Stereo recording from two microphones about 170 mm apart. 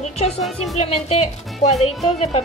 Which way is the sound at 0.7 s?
35° left (ahead or behind).